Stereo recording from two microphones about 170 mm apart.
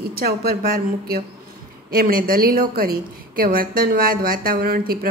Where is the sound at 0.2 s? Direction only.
65° right (ahead or behind).